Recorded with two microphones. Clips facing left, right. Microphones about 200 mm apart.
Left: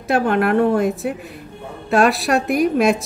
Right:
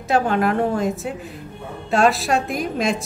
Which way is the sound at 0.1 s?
60° left (ahead or behind).